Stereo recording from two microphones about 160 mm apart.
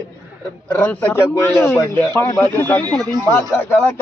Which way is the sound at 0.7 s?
10° left (ahead or behind).